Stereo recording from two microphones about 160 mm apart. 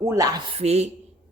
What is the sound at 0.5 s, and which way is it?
Speech, 40° right (ahead or behind).